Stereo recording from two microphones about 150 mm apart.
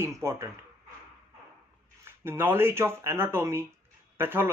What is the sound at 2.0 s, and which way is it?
Speech, 15° right (ahead or behind).